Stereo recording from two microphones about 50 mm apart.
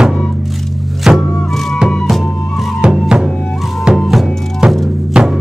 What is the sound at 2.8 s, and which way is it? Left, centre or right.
Music, centre.